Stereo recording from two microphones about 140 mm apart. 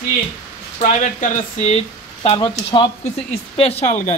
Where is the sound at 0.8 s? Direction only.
55° left (ahead or behind).